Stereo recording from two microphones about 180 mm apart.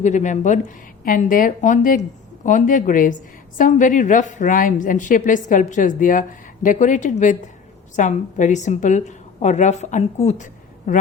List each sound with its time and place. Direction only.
0.0 s a woman's voice: 40° left (ahead or behind)